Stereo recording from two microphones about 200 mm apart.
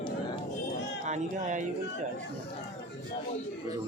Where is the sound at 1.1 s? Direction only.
40° right (ahead or behind).